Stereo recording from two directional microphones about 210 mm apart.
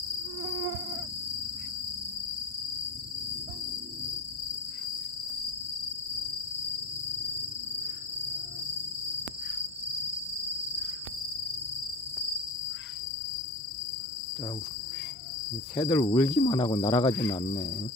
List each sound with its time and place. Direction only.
15.7 s cricket: 15° left (ahead or behind)
16.4 s speech: 25° left (ahead or behind)